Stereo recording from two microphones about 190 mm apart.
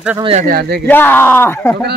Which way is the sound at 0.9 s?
10° left (ahead or behind).